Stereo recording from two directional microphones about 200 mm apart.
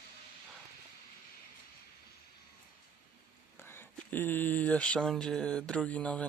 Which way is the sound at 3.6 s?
10° left (ahead or behind).